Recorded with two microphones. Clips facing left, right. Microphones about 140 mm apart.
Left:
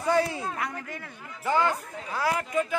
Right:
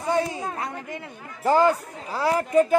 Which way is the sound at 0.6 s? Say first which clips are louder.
Right 2 dB; 25° right (ahead or behind).